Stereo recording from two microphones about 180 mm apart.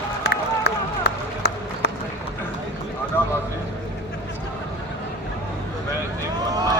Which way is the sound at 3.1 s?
10° left (ahead or behind).